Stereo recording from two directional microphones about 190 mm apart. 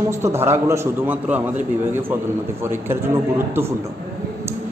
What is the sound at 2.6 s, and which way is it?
A man's voice, 10° right (ahead or behind).